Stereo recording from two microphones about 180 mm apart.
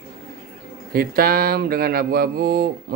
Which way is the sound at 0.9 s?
55° right (ahead or behind).